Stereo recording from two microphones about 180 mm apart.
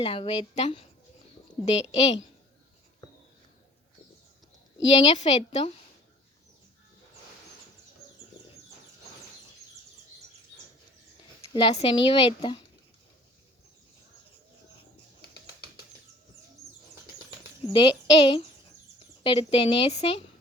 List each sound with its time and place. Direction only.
0.0 s speech: 35° left (ahead or behind)
5.0 s speech: 35° left (ahead or behind)
11.5 s a woman's voice: 35° left (ahead or behind)
17.7 s a woman's voice: 25° left (ahead or behind)